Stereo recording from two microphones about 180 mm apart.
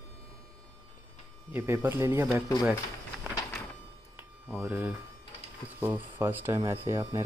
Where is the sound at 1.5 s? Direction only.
10° right (ahead or behind).